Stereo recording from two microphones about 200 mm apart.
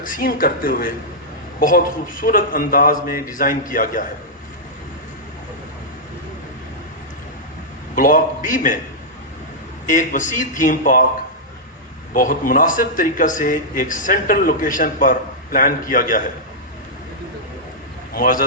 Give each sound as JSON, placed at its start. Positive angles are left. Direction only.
{"t": 0.0, "sound": "a man's voice", "side_deg": 45}
{"t": 7.9, "sound": "a man's voice", "side_deg": 40}
{"t": 9.9, "sound": "a man's voice", "side_deg": 40}
{"t": 12.1, "sound": "a man's voice", "side_deg": 45}
{"t": 18.1, "sound": "speech", "side_deg": 45}